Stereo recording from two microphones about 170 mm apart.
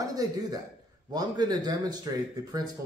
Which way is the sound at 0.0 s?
20° right (ahead or behind).